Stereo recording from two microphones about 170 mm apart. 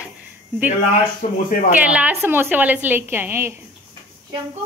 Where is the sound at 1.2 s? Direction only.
45° left (ahead or behind).